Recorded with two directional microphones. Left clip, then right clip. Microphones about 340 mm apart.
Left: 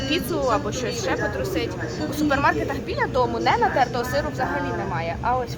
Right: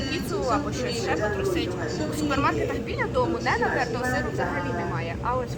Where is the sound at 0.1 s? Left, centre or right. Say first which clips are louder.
Left 5 dB; left.